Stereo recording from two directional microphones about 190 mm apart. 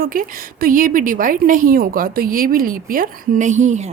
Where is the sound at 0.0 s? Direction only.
50° right (ahead or behind).